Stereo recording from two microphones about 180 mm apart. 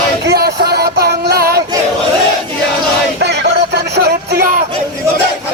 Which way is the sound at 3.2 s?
70° right (ahead or behind).